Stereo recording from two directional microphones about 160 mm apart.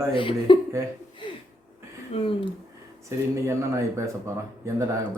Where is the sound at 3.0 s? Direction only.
20° right (ahead or behind).